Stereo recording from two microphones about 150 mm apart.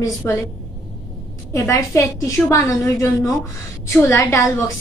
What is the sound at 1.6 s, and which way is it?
A woman's voice, 20° left (ahead or behind).